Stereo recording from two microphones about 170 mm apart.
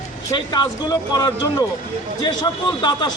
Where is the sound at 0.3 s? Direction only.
25° left (ahead or behind).